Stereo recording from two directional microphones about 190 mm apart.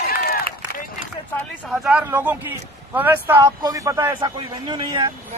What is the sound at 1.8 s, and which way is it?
A man's voice, 5° right (ahead or behind).